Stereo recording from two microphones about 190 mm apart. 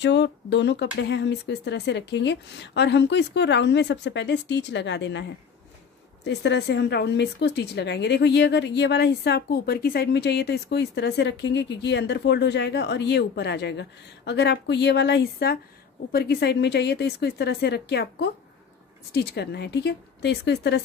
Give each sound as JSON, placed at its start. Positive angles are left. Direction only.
{"t": 0.0, "sound": "speech", "side_deg": 70}
{"t": 6.2, "sound": "speech", "side_deg": 65}